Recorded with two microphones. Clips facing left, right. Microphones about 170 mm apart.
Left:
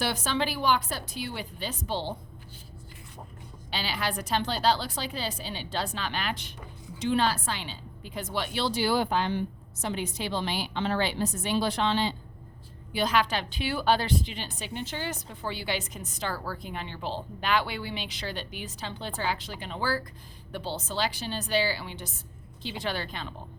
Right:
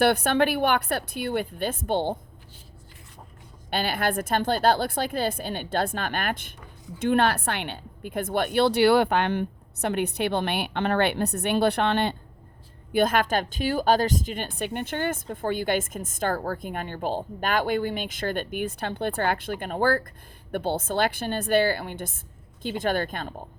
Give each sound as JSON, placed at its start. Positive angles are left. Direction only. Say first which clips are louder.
{"t": 0.0, "sound": "a woman's voice", "louder": "right 8 dB", "side_deg": -60}
{"t": 3.7, "sound": "a woman's voice", "louder": "right 6 dB", "side_deg": -55}